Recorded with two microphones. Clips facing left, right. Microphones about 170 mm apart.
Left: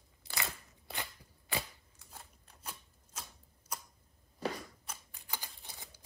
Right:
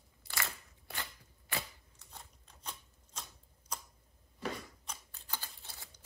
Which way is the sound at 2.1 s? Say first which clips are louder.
Even; 5° left (ahead or behind).